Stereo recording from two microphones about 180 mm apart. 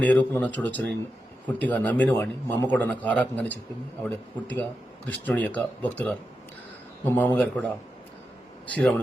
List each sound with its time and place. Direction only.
0.0 s a man's voice: 10° left (ahead or behind)
8.7 s speech: 5° left (ahead or behind)